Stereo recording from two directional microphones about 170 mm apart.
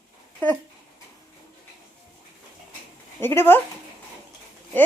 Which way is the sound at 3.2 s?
15° left (ahead or behind).